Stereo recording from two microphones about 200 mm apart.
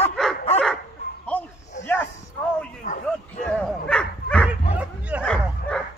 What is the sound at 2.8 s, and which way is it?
Bow-wow, 40° left (ahead or behind).